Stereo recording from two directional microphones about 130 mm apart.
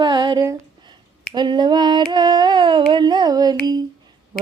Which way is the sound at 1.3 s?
35° right (ahead or behind).